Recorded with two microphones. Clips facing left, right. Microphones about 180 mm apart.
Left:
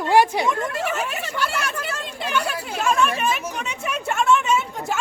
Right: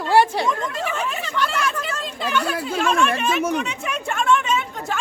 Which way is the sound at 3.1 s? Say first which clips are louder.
Right 4 dB; 10° left (ahead or behind).